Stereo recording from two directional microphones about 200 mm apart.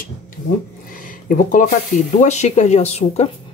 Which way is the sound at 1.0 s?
40° left (ahead or behind).